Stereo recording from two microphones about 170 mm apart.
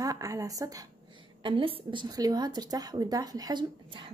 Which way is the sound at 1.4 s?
30° right (ahead or behind).